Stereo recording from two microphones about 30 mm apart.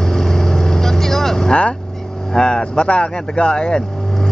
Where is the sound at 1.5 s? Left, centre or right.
Left.